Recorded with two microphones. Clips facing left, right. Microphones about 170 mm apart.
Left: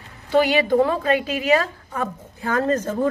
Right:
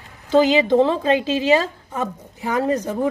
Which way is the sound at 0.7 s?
25° right (ahead or behind).